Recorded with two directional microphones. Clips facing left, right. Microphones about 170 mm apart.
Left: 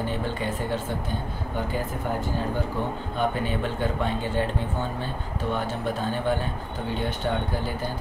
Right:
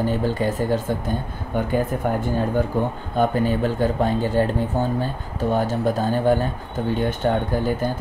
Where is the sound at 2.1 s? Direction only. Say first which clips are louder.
Right 3 dB; 50° right (ahead or behind).